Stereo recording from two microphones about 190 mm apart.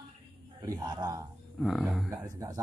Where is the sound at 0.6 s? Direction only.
20° right (ahead or behind).